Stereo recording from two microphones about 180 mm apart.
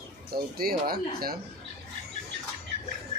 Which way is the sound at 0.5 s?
55° right (ahead or behind).